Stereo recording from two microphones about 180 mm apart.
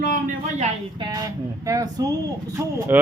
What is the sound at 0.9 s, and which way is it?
Speech, 20° right (ahead or behind).